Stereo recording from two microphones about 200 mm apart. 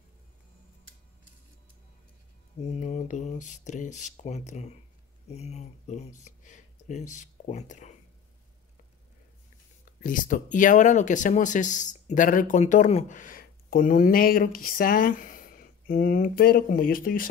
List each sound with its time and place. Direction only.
2.6 s speech: 35° left (ahead or behind)
9.8 s speech: 40° left (ahead or behind)